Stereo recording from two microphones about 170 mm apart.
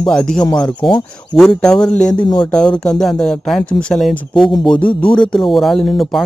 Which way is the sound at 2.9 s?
5° left (ahead or behind).